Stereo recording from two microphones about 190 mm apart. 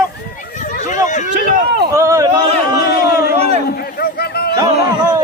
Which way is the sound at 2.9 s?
50° left (ahead or behind).